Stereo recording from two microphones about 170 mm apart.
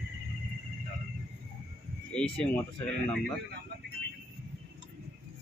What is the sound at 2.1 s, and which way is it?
Speech, 5° left (ahead or behind).